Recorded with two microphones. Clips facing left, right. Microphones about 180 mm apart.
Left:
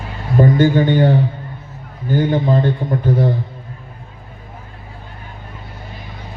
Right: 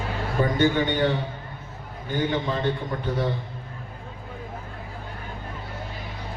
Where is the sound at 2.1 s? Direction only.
45° left (ahead or behind).